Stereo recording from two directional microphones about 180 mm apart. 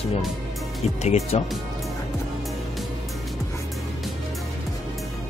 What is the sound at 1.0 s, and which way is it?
Speech, 35° left (ahead or behind).